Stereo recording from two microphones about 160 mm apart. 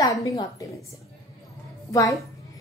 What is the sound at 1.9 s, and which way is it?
Speech, 20° left (ahead or behind).